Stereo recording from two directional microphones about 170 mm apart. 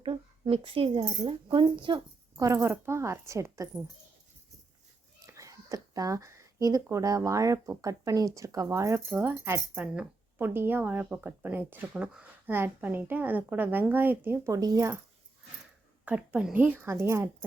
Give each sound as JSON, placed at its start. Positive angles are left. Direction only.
{"t": 0.0, "sound": "a sound", "side_deg": -30}
{"t": 1.5, "sound": "speech", "side_deg": -30}
{"t": 2.4, "sound": "speech", "side_deg": -15}
{"t": 5.2, "sound": "speech", "side_deg": -20}
{"t": 16.0, "sound": "speech", "side_deg": -5}